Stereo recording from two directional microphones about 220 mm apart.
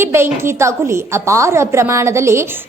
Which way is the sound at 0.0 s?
10° right (ahead or behind).